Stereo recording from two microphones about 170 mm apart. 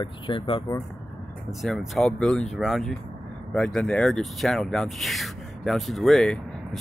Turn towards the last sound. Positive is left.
turn(degrees=0)  # may be behind; listen again after turning